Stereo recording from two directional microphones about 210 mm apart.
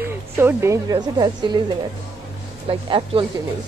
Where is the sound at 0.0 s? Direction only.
10° right (ahead or behind).